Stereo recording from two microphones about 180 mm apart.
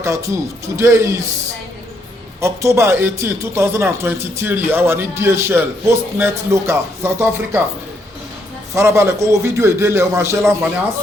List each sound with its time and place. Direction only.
0.0 s a man's voice: 15° right (ahead or behind)
2.4 s a man's voice: 15° right (ahead or behind)
8.7 s a man's voice: 15° right (ahead or behind)